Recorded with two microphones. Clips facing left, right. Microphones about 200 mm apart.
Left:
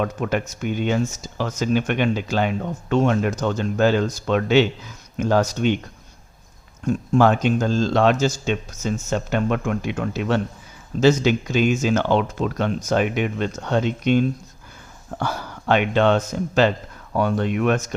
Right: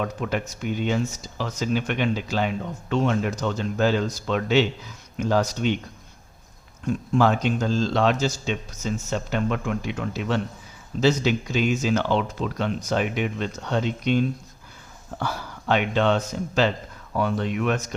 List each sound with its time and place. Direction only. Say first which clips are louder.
0.0 s speech: left 4 dB; 50° left (ahead or behind)
6.8 s speech: left 4 dB; 50° left (ahead or behind)
15.2 s speech: left 3 dB; 55° left (ahead or behind)